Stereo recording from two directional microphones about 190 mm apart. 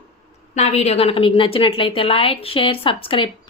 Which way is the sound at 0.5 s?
35° left (ahead or behind).